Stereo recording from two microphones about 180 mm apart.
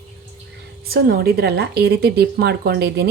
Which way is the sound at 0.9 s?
60° right (ahead or behind).